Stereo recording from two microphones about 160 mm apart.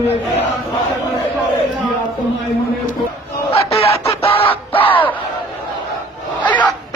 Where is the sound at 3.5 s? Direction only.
40° left (ahead or behind).